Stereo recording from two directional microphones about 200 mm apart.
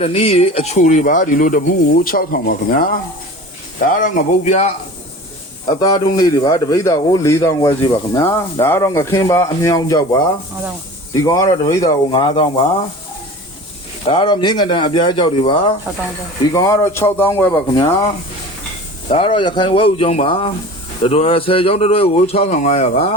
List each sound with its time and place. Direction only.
0.0 s speech: 30° left (ahead or behind)
5.6 s speech: 20° left (ahead or behind)
11.8 s speech: 30° left (ahead or behind)
14.1 s speech: 25° left (ahead or behind)